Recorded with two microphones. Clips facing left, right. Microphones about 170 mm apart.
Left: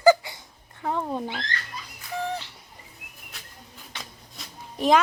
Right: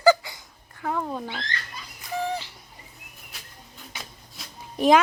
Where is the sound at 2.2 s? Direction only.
Centre (ahead or behind).